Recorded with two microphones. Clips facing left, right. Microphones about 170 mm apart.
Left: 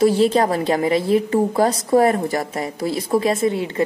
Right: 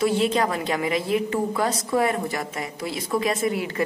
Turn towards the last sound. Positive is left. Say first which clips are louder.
# left 5 dB
turn(degrees=25)  # may be behind; listen again after turning